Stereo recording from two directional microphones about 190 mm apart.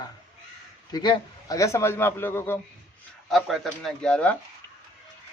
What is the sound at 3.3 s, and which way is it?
Speech, centre (ahead or behind).